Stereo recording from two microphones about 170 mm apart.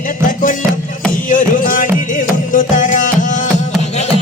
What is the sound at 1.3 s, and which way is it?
Music, 50° left (ahead or behind).